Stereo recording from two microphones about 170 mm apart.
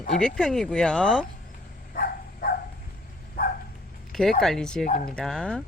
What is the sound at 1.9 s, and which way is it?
Dog, 60° left (ahead or behind).